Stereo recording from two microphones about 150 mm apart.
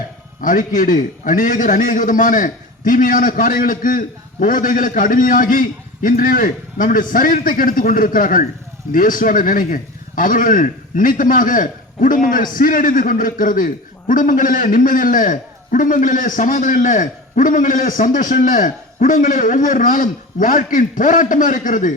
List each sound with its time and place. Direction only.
0.4 s a man's voice: 60° left (ahead or behind)